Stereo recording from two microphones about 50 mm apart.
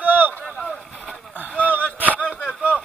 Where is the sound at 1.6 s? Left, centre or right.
Right.